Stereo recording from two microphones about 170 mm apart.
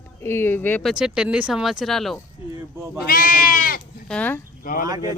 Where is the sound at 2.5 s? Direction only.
15° right (ahead or behind).